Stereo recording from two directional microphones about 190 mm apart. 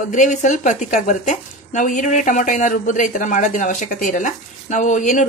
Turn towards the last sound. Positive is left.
turn(degrees=40)  # may be behind; listen again after turning